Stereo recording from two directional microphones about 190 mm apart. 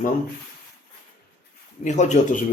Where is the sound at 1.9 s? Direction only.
40° left (ahead or behind).